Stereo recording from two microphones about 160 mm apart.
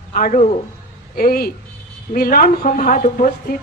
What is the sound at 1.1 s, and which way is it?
A woman's voice, 70° left (ahead or behind).